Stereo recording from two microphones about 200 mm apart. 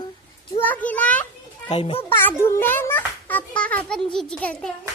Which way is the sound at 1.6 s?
30° left (ahead or behind).